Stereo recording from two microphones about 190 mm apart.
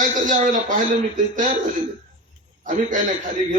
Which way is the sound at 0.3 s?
45° right (ahead or behind).